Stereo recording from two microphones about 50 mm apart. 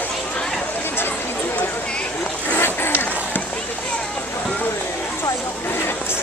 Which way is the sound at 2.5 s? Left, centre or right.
Left.